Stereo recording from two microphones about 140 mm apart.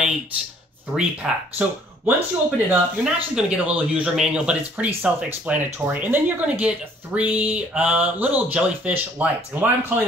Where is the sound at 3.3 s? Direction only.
10° right (ahead or behind).